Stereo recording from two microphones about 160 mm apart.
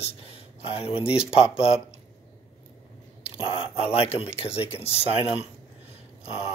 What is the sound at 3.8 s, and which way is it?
Speech, 35° left (ahead or behind).